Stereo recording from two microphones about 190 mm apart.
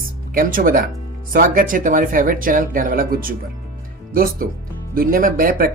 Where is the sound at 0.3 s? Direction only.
50° right (ahead or behind).